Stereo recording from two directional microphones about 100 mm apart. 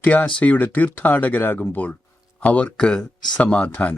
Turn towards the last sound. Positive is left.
turn(degrees=15)  # may be behind; listen again after turning